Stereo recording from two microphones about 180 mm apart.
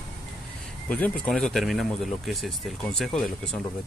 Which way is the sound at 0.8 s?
5° left (ahead or behind).